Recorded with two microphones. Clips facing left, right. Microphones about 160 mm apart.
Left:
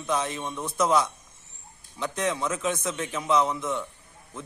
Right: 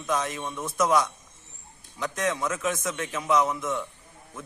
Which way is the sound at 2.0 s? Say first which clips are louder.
Even; 25° left (ahead or behind).